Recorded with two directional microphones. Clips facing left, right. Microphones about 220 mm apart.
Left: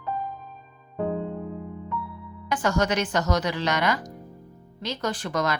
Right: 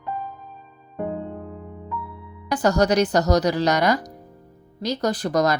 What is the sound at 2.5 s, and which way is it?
Speech, 40° right (ahead or behind).